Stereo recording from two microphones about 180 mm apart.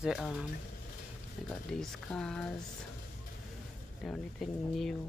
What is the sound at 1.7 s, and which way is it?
Speech, 5° left (ahead or behind).